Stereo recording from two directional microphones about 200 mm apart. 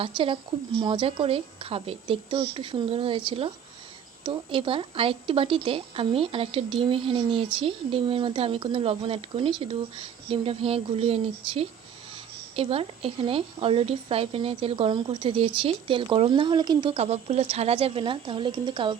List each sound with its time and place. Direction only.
0.0 s speech: 25° right (ahead or behind)